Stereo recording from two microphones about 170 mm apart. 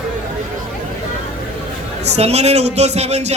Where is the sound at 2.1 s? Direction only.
40° right (ahead or behind).